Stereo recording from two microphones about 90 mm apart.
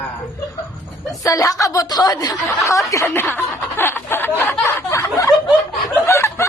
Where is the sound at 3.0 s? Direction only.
25° left (ahead or behind).